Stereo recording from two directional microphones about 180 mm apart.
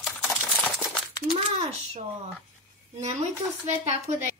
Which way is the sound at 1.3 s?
35° right (ahead or behind).